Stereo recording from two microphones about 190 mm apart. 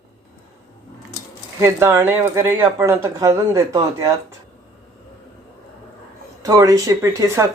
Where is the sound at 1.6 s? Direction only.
15° right (ahead or behind).